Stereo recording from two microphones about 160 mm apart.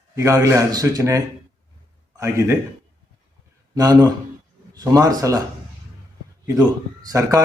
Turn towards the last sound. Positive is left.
turn(degrees=-20)  # may be behind; listen again after turning